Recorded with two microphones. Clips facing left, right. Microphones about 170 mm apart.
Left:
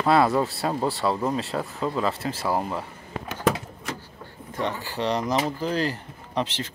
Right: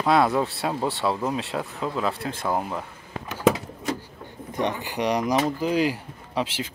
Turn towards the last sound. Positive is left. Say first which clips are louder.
# even
turn(degrees=-10)  # may be behind; listen again after turning